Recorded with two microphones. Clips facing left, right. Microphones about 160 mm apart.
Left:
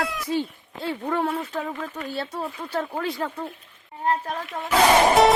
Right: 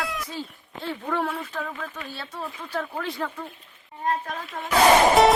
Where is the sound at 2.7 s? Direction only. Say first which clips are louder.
Left 2 dB; 30° left (ahead or behind).